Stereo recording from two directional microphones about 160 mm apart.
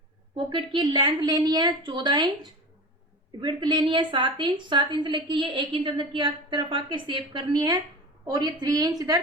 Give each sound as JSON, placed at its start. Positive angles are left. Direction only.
{"t": 0.3, "sound": "a woman's voice", "side_deg": -30}